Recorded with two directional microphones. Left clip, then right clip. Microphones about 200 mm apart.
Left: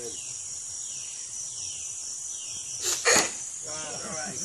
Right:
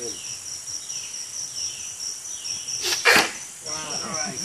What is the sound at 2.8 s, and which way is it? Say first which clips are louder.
Cricket: right 6 dB; 40° right (ahead or behind).